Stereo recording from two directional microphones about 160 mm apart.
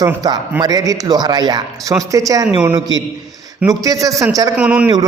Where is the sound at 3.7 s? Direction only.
20° right (ahead or behind).